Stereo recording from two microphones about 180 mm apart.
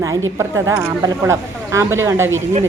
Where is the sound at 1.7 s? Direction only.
15° right (ahead or behind).